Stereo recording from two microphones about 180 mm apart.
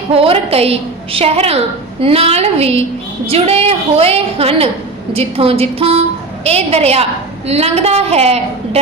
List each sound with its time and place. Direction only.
0.1 s a woman's voice: 35° right (ahead or behind)